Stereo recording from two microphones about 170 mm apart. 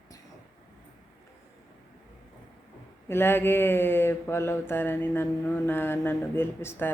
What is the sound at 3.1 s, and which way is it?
Mantra, 15° left (ahead or behind).